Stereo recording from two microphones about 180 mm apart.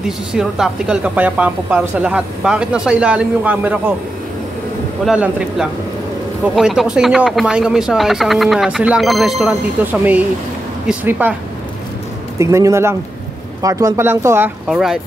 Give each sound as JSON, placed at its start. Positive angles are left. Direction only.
{"t": 0.3, "sound": "speech", "side_deg": -5}
{"t": 5.0, "sound": "speech", "side_deg": -5}
{"t": 12.4, "sound": "speech", "side_deg": -15}